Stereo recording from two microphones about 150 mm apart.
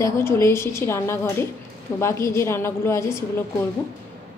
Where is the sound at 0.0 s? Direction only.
15° left (ahead or behind).